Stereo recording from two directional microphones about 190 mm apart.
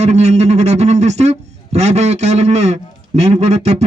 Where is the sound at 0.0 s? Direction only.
35° right (ahead or behind).